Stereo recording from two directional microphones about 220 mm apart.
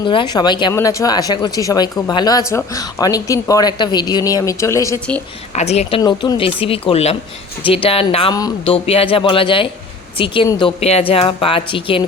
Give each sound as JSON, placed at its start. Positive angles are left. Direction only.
{"t": 0.0, "sound": "a woman's voice", "side_deg": 20}
{"t": 5.5, "sound": "speech", "side_deg": 30}
{"t": 6.0, "sound": "speech", "side_deg": 20}